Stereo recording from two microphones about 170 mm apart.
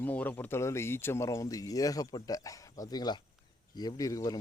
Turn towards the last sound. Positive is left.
turn(degrees=20)  # may be behind; listen again after turning